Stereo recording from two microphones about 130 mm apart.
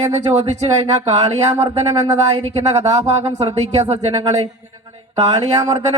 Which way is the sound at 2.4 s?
50° right (ahead or behind).